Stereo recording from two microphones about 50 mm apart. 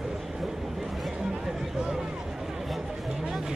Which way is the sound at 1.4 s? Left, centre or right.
Centre.